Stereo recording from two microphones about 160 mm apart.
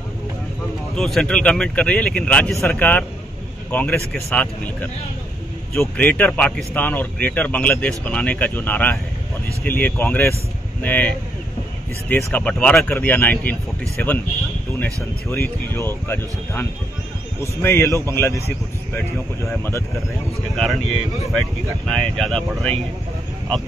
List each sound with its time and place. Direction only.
0.9 s speech: 5° left (ahead or behind)
15.2 s speech: 15° left (ahead or behind)
20.5 s speech: centre (ahead or behind)